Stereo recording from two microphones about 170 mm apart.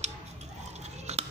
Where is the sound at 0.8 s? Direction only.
40° right (ahead or behind).